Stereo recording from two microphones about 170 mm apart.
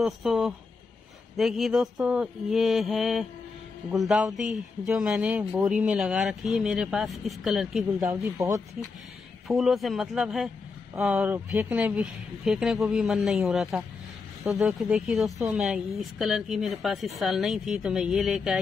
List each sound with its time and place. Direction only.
0.0 s a woman's voice: centre (ahead or behind)
8.0 s speech: 15° right (ahead or behind)
9.5 s a woman's voice: centre (ahead or behind)